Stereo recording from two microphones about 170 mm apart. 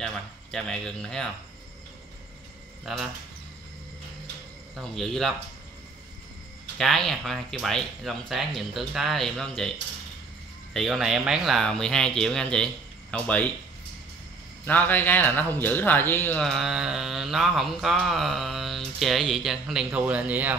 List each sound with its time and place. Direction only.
0.0 s speech: 5° left (ahead or behind)
2.8 s speech: centre (ahead or behind)
4.7 s speech: centre (ahead or behind)
6.8 s speech: centre (ahead or behind)
10.7 s speech: centre (ahead or behind)
14.6 s speech: 10° left (ahead or behind); by 20.5 s 10° right (ahead or behind)